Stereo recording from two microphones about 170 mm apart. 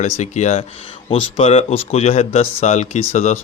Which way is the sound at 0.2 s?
40° left (ahead or behind).